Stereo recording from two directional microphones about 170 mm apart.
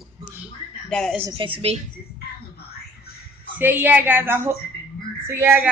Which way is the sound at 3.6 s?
10° right (ahead or behind).